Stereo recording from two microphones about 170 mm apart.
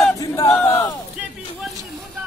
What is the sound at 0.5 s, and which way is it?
Crowd, 10° left (ahead or behind).